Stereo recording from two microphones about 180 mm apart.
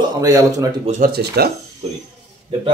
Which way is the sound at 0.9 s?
55° right (ahead or behind).